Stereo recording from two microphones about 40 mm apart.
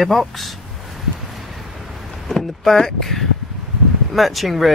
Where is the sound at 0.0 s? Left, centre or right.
Centre.